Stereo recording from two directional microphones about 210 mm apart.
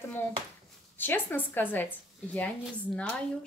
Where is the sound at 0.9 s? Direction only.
10° left (ahead or behind).